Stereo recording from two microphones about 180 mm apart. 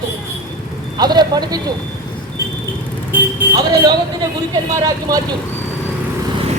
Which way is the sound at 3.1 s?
20° right (ahead or behind).